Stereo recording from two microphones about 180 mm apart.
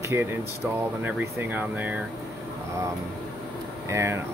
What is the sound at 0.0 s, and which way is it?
Speech, 15° right (ahead or behind).